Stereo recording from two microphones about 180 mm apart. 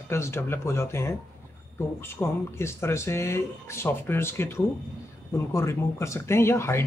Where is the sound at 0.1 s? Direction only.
15° left (ahead or behind).